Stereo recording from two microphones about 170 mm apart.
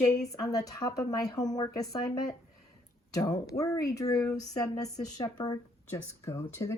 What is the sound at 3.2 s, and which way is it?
Speech, 20° left (ahead or behind).